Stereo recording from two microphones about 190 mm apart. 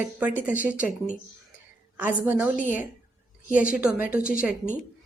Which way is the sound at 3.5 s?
45° left (ahead or behind).